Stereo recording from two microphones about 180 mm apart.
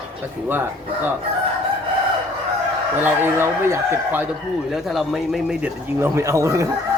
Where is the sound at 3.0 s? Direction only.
10° right (ahead or behind).